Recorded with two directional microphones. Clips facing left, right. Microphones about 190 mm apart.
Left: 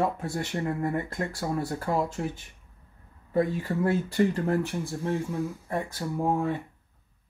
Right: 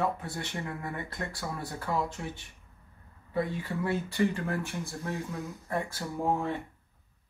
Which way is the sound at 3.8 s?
40° left (ahead or behind).